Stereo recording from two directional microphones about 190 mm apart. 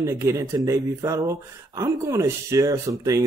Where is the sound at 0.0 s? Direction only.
15° right (ahead or behind).